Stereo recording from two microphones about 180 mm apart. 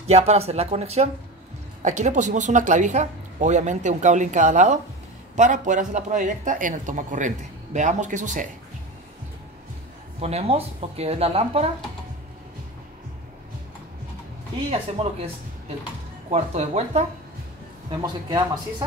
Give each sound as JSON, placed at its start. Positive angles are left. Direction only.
{"t": 0.0, "sound": "a woman's voice", "side_deg": -35}
{"t": 10.2, "sound": "speech", "side_deg": -35}
{"t": 15.0, "sound": "speech", "side_deg": -30}
{"t": 16.3, "sound": "speech", "side_deg": -35}
{"t": 18.0, "sound": "speech", "side_deg": -25}